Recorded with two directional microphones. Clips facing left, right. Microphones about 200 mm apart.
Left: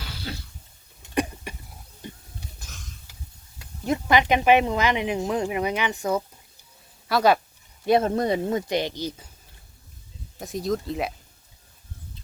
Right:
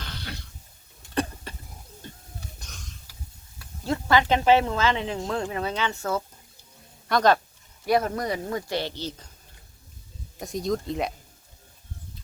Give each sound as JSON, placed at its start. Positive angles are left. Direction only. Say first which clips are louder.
{"t": 0.0, "sound": "cough", "louder": "even", "side_deg": 5}
{"t": 1.1, "sound": "a sound", "louder": "left 2 dB", "side_deg": 15}
{"t": 2.6, "sound": "a sound", "louder": "even", "side_deg": 0}
{"t": 3.8, "sound": "speech", "louder": "left 1 dB", "side_deg": 20}
{"t": 7.9, "sound": "speech", "louder": "left 4 dB", "side_deg": 25}
{"t": 10.4, "sound": "speech", "louder": "left 1 dB", "side_deg": 0}